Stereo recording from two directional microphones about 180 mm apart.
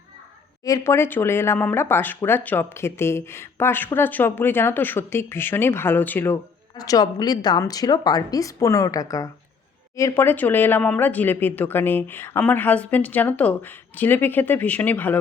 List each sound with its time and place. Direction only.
0.6 s speech: 15° left (ahead or behind)